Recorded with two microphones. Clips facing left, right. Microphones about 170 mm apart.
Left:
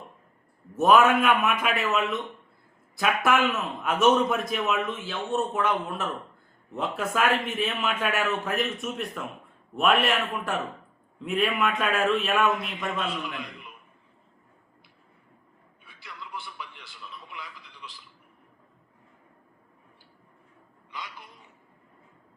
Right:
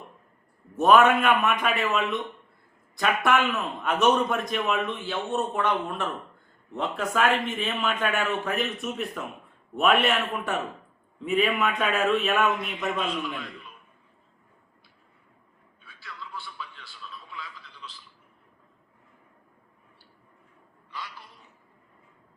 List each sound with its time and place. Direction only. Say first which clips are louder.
0.8 s a man's voice: right 1 dB; 5° left (ahead or behind)
13.4 s speech: even; 20° left (ahead or behind)
16.0 s radio: even; 20° left (ahead or behind)